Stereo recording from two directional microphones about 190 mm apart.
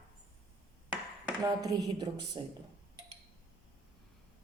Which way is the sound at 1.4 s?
20° right (ahead or behind).